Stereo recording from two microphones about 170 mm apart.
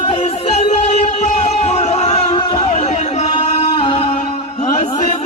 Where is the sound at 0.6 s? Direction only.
40° left (ahead or behind).